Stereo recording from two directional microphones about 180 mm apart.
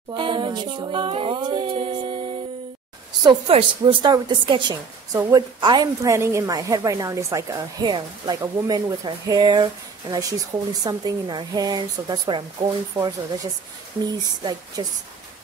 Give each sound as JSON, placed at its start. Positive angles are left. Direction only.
{"t": 0.1, "sound": "a woman's voice", "side_deg": -25}
{"t": 3.3, "sound": "a woman's voice", "side_deg": -30}
{"t": 14.8, "sound": "a woman's voice", "side_deg": -20}